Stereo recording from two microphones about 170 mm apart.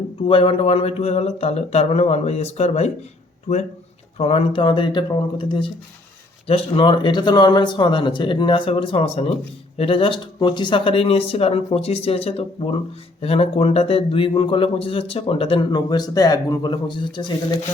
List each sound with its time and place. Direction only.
0.2 s a man's voice: 30° left (ahead or behind)